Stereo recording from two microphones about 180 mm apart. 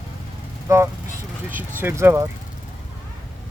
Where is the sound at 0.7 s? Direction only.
15° right (ahead or behind).